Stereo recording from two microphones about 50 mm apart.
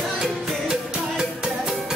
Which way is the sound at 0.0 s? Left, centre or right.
Centre.